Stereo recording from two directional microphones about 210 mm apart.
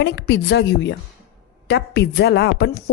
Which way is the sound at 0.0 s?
55° left (ahead or behind).